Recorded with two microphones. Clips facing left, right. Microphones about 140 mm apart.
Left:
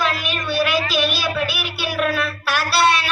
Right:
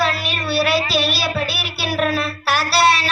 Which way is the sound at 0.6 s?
35° right (ahead or behind).